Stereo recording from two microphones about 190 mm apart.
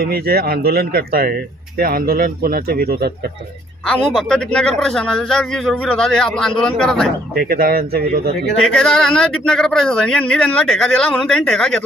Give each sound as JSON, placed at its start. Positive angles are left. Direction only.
{"t": 0.0, "sound": "speech", "side_deg": -55}
{"t": 3.8, "sound": "a man's voice", "side_deg": 0}
{"t": 7.3, "sound": "speech", "side_deg": -55}
{"t": 8.6, "sound": "a man's voice", "side_deg": 5}